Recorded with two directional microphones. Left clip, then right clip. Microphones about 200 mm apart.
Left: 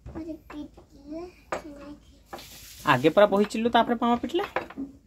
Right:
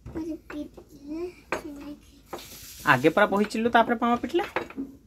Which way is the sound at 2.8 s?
15° left (ahead or behind).